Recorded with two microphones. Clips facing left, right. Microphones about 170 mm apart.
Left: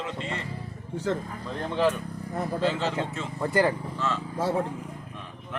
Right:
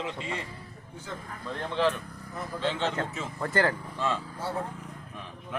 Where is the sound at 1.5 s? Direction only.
15° left (ahead or behind); by 3.3 s 5° right (ahead or behind).